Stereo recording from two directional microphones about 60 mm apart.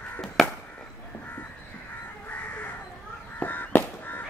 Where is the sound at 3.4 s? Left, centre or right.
Left.